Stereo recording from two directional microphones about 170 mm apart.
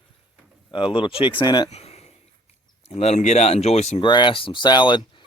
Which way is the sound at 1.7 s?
40° left (ahead or behind).